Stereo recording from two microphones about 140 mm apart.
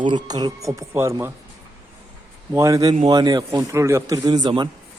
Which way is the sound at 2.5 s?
25° right (ahead or behind).